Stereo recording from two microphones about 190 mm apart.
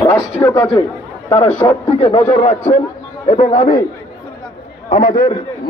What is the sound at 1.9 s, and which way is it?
Speech, 35° left (ahead or behind).